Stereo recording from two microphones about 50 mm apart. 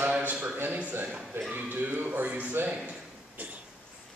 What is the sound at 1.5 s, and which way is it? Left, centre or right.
A man's voice, right.